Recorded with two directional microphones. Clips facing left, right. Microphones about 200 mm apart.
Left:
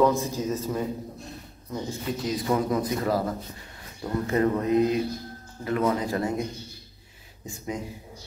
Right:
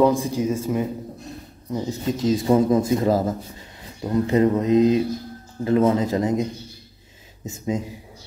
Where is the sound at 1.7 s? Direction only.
25° right (ahead or behind).